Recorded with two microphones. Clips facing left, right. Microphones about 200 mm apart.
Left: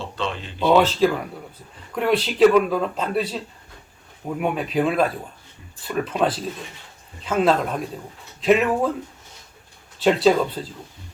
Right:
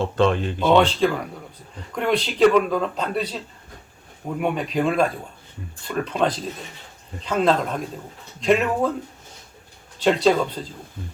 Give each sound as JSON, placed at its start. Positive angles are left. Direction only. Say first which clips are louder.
{"t": 0.0, "sound": "speech", "louder": "right 9 dB", "side_deg": -50}
{"t": 0.7, "sound": "speech", "louder": "left 1 dB", "side_deg": 5}
{"t": 10.0, "sound": "speech", "louder": "left 1 dB", "side_deg": 5}